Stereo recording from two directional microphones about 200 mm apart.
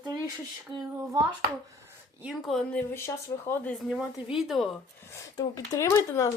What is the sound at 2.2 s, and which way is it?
Speech, centre (ahead or behind).